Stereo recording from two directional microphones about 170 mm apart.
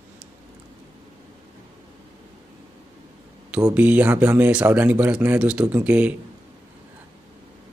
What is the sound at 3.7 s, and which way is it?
Speech, 10° right (ahead or behind).